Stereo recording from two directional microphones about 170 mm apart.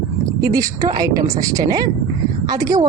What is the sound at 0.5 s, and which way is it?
A woman's voice, 20° right (ahead or behind).